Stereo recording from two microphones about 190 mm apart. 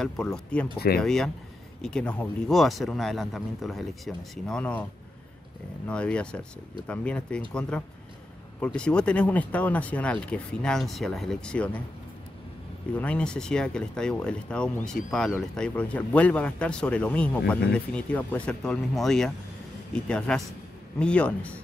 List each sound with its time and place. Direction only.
0.0 s speech: 5° left (ahead or behind)
0.7 s speech: 55° left (ahead or behind)
1.0 s speech: centre (ahead or behind)
5.9 s speech: 5° left (ahead or behind)
12.9 s speech: 5° left (ahead or behind)